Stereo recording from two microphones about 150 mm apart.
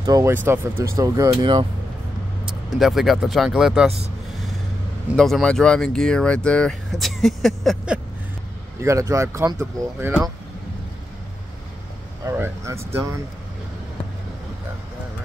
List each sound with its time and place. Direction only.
0.0 s speech: 25° right (ahead or behind)
2.8 s speech: centre (ahead or behind)
5.1 s speech: centre (ahead or behind)
8.8 s speech: 20° right (ahead or behind)
12.3 s speech: 20° right (ahead or behind)